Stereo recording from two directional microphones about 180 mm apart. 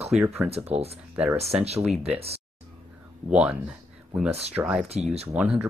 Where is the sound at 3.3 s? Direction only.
5° right (ahead or behind).